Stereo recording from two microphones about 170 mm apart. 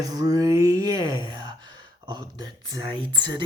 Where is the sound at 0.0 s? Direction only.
20° right (ahead or behind).